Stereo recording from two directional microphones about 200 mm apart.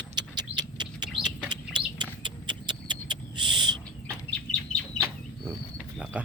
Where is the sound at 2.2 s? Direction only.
20° right (ahead or behind).